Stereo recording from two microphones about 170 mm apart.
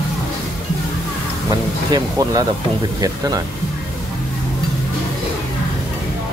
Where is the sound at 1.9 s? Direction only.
20° right (ahead or behind).